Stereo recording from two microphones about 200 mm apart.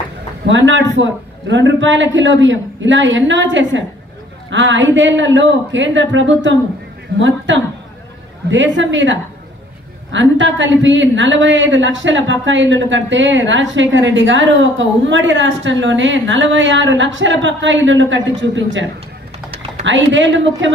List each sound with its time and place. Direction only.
0.5 s a woman's voice: 65° right (ahead or behind)